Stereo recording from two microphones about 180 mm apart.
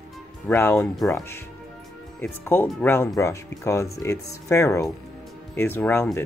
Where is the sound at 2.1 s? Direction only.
10° left (ahead or behind).